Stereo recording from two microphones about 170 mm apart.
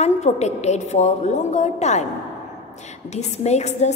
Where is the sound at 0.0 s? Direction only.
40° left (ahead or behind).